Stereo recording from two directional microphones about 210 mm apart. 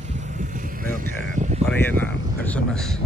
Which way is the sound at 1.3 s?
35° right (ahead or behind).